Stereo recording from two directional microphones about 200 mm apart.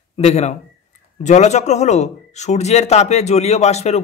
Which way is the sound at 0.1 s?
30° left (ahead or behind).